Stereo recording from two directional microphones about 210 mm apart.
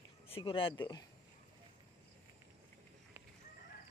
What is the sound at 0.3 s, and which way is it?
Speech, 25° left (ahead or behind).